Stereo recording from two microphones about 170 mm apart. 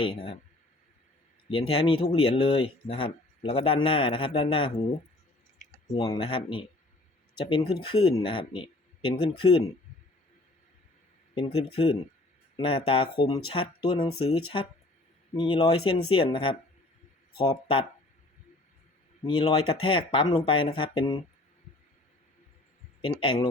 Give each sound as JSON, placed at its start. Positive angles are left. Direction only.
{"t": 0.0, "sound": "a man's voice", "side_deg": 35}
{"t": 1.5, "sound": "a man's voice", "side_deg": 30}
{"t": 5.9, "sound": "speech", "side_deg": 20}
{"t": 6.1, "sound": "a man's voice", "side_deg": 35}
{"t": 11.3, "sound": "a man's voice", "side_deg": 35}
{"t": 19.2, "sound": "a man's voice", "side_deg": 25}
{"t": 23.0, "sound": "a man's voice", "side_deg": 30}